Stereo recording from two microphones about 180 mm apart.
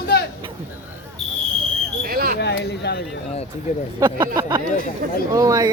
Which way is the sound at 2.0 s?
55° right (ahead or behind).